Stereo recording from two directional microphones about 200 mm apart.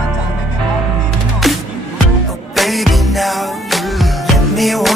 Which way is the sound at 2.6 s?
Centre (ahead or behind).